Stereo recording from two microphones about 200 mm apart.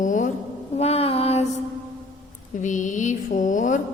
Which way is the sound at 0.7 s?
30° left (ahead or behind).